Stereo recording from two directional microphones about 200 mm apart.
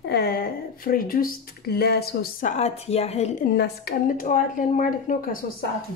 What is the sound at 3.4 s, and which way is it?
Speech, 50° left (ahead or behind).